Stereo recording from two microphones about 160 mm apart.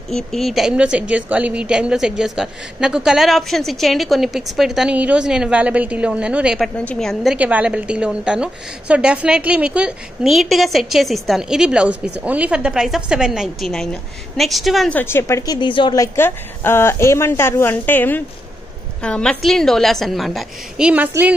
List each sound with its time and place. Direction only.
0.1 s a woman's voice: centre (ahead or behind)
6.8 s a woman's voice: 5° left (ahead or behind)
7.3 s a woman's voice: 10° right (ahead or behind)
15.0 s a woman's voice: 15° left (ahead or behind); by 21.4 s 10° right (ahead or behind)